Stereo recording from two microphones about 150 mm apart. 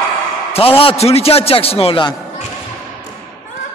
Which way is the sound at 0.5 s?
40° left (ahead or behind).